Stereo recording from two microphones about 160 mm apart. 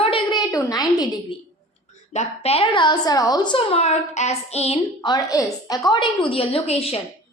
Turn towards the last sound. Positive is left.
turn(degrees=40)  # may be behind; listen again after turning